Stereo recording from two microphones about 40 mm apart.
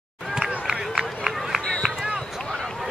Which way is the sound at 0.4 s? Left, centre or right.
Centre.